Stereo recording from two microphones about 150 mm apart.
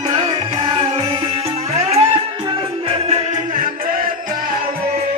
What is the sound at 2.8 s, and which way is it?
Music, 40° right (ahead or behind).